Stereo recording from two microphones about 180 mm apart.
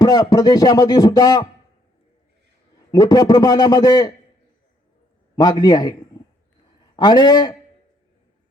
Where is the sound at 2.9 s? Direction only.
20° left (ahead or behind).